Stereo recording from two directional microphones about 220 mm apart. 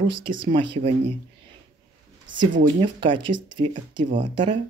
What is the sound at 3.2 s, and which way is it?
Speech, 90° right.